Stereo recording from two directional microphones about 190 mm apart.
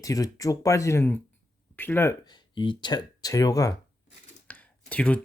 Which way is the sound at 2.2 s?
25° left (ahead or behind).